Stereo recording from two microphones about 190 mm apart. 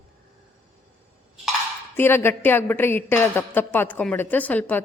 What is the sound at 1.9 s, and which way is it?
A woman's voice, 10° left (ahead or behind).